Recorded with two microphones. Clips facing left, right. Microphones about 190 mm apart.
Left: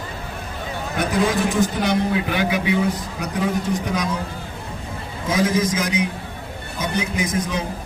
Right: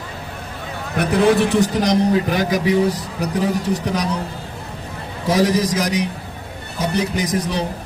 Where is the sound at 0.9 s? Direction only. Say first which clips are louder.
Right 5 dB; 65° right (ahead or behind).